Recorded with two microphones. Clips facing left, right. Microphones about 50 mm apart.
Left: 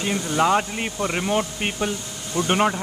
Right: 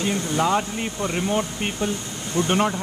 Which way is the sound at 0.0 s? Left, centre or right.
Centre.